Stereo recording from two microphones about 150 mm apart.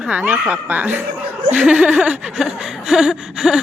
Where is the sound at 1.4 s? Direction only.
10° right (ahead or behind).